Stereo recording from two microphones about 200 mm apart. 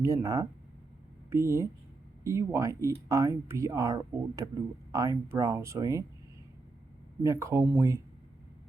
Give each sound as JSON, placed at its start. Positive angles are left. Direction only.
{"t": 0.0, "sound": "speech", "side_deg": -15}
{"t": 7.2, "sound": "speech", "side_deg": -15}